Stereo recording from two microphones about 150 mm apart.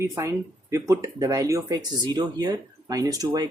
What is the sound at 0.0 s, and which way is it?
Speech, 20° right (ahead or behind).